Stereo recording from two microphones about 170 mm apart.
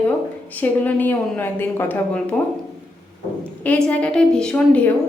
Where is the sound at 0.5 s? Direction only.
10° left (ahead or behind).